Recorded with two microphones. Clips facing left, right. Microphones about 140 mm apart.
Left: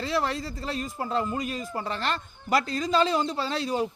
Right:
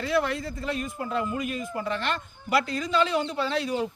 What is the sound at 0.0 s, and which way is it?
Speech, 30° left (ahead or behind).